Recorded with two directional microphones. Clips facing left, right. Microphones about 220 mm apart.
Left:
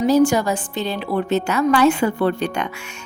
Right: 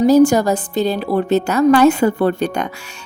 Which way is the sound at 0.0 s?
40° right (ahead or behind).